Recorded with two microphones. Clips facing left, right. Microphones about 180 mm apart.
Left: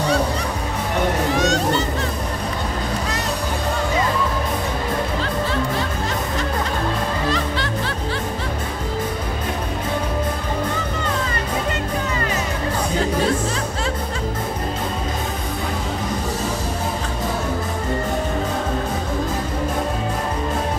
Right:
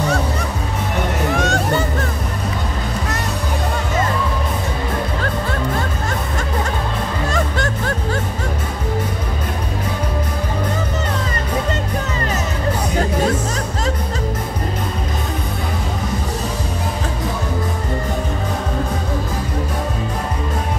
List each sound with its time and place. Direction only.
1.3 s hubbub: 50° right (ahead or behind)
5.2 s music: 50° right (ahead or behind)
7.2 s music: 45° right (ahead or behind)